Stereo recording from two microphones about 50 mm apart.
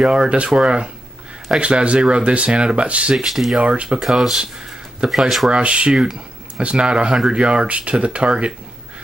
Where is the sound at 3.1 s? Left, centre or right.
Centre.